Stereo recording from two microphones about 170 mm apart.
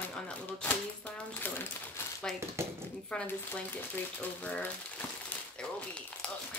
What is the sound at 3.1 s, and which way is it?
Speech, 10° left (ahead or behind).